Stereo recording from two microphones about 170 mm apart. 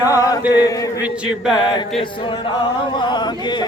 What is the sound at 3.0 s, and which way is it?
Speech, 25° left (ahead or behind).